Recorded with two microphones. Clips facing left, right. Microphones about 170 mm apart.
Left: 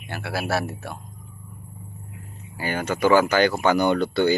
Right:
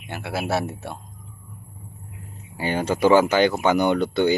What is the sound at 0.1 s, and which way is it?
Speech, 20° right (ahead or behind).